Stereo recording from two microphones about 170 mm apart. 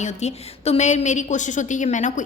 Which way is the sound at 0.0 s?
40° left (ahead or behind).